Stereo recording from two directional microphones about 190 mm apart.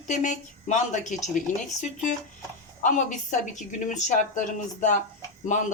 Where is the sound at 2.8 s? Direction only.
40° left (ahead or behind).